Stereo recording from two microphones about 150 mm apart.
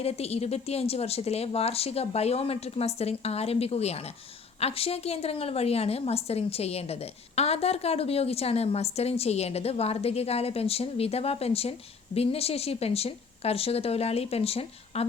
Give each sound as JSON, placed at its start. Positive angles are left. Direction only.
{"t": 0.0, "sound": "a woman's voice", "side_deg": 45}